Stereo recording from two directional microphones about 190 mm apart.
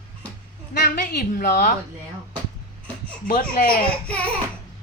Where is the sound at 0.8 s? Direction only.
50° left (ahead or behind).